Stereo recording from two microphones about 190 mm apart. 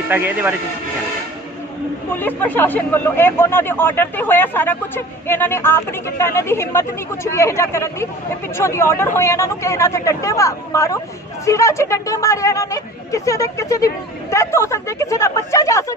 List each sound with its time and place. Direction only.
0.1 s speech: 10° right (ahead or behind)
2.1 s speech: 10° left (ahead or behind)